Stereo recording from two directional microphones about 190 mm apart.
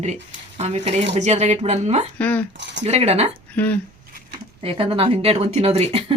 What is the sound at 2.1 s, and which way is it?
Speech, 10° left (ahead or behind).